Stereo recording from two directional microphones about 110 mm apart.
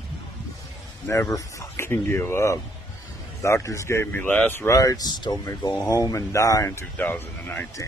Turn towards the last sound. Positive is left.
turn(degrees=15)  # may be behind; listen again after turning